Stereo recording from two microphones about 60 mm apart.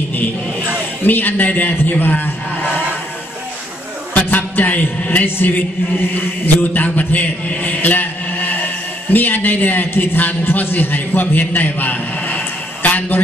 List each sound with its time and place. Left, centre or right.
1.0 s a man's voice: left
4.1 s a man's voice: left